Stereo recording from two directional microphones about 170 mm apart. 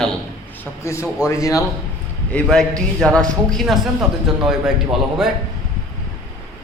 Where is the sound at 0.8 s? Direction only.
15° left (ahead or behind).